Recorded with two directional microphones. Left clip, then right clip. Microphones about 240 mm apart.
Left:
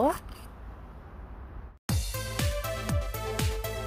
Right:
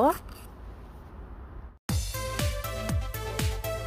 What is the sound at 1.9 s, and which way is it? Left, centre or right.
Music, centre.